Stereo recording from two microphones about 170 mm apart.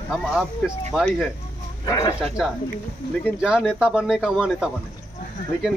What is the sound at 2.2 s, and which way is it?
Speech, centre (ahead or behind).